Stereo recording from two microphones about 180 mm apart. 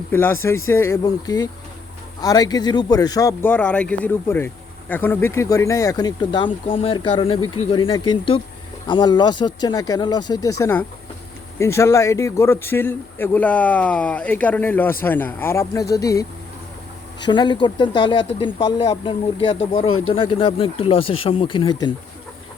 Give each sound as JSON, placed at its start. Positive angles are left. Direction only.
{"t": 0.1, "sound": "a man's voice", "side_deg": 10}